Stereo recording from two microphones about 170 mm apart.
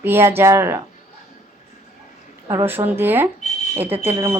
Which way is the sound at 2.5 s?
15° right (ahead or behind).